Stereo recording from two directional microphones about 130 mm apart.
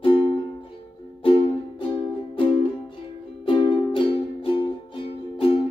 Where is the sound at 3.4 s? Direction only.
40° left (ahead or behind).